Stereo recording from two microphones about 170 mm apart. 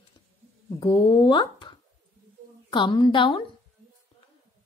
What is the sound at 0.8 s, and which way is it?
A woman's voice, 25° left (ahead or behind).